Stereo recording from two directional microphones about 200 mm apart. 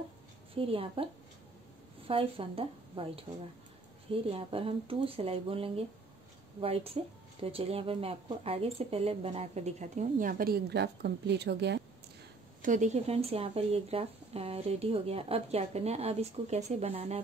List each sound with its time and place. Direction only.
0.6 s speech: 30° right (ahead or behind)
2.0 s speech: 25° right (ahead or behind); by 11.8 s 60° right (ahead or behind)
12.6 s speech: 35° right (ahead or behind)